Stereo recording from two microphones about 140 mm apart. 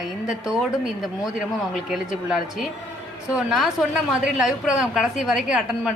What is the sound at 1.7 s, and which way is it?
A woman's voice, 5° right (ahead or behind).